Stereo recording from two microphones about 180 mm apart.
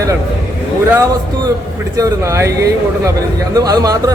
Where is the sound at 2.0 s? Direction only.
15° right (ahead or behind).